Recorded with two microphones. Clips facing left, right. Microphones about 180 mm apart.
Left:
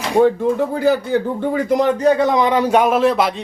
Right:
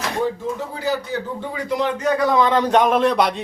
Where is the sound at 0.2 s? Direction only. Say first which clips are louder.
Left 11 dB; 60° left (ahead or behind).